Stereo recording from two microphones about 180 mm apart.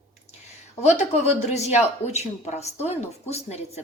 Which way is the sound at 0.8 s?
40° left (ahead or behind).